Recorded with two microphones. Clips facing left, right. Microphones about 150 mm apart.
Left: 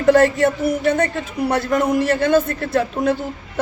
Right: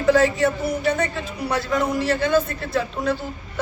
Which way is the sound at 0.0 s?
50° left (ahead or behind).